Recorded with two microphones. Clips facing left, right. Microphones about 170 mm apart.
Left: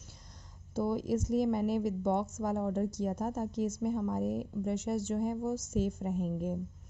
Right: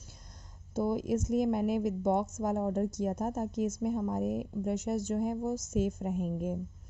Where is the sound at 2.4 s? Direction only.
15° right (ahead or behind).